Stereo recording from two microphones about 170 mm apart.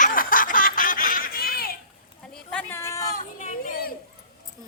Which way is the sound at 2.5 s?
10° left (ahead or behind).